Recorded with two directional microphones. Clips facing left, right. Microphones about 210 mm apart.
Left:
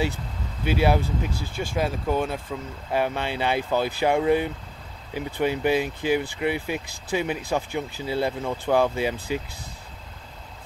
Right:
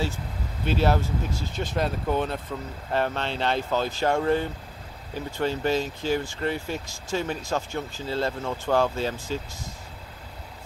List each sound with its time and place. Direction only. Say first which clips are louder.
0.7 s speech: left 2 dB; 10° left (ahead or behind)